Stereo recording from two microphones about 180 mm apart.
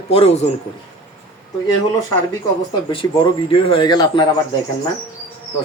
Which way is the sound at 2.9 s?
25° left (ahead or behind).